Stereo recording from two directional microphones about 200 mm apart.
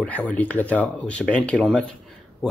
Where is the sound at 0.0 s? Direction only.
10° left (ahead or behind).